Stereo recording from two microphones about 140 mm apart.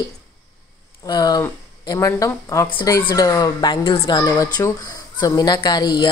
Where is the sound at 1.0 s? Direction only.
30° left (ahead or behind).